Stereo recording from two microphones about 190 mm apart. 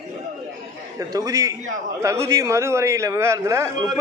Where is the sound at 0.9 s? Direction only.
20° right (ahead or behind).